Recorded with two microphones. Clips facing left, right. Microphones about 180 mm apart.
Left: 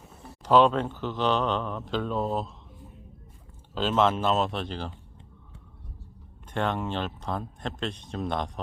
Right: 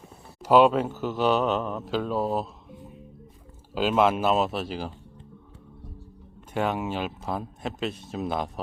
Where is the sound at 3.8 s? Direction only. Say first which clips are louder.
Right 2 dB; 10° right (ahead or behind).